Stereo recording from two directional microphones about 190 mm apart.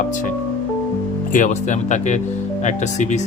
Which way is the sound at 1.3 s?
40° left (ahead or behind).